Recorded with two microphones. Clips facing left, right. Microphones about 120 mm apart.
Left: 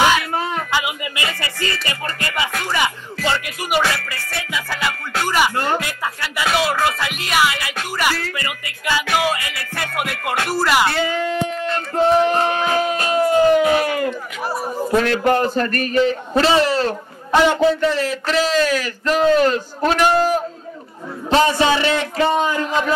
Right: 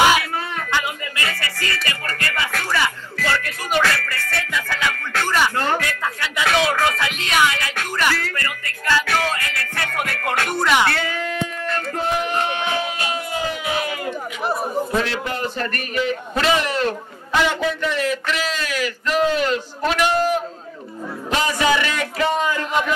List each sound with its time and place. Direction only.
0.7 s music: 10° left (ahead or behind)
10.9 s speech: 20° left (ahead or behind); by 14.0 s 50° left (ahead or behind)
15.0 s a man's voice: 55° left (ahead or behind)
15.4 s a man's voice: 40° left (ahead or behind)